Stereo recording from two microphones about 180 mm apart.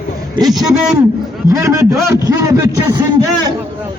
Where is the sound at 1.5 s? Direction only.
15° right (ahead or behind).